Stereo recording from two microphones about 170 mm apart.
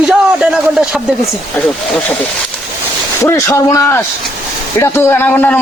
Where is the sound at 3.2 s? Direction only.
20° left (ahead or behind).